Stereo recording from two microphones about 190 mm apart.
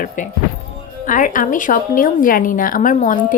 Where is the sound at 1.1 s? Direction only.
45° left (ahead or behind).